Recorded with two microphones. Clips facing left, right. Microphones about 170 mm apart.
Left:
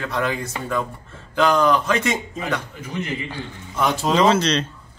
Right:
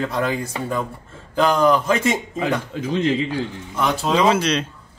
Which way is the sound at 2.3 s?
90° right.